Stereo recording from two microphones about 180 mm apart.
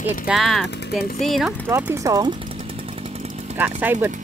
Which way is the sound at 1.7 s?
15° right (ahead or behind).